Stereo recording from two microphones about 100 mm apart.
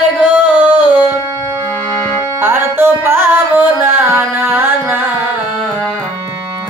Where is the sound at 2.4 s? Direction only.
20° right (ahead or behind).